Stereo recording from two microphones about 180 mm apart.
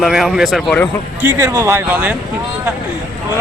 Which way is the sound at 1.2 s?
15° right (ahead or behind).